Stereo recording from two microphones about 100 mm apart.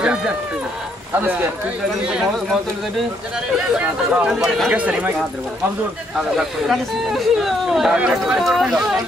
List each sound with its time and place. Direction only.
0.0 s run: 10° right (ahead or behind)
1.1 s speech: 20° right (ahead or behind)
2.0 s speech: 10° right (ahead or behind)
6.1 s speech: centre (ahead or behind)